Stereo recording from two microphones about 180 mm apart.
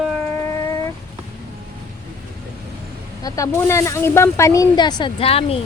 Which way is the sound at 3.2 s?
15° left (ahead or behind).